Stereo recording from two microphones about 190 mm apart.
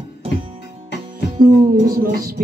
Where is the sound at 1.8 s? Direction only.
50° right (ahead or behind).